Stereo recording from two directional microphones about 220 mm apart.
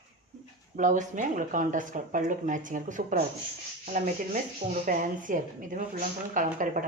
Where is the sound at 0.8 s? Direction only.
35° right (ahead or behind).